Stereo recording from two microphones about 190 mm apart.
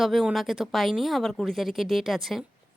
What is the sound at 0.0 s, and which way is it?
A woman's voice, centre (ahead or behind).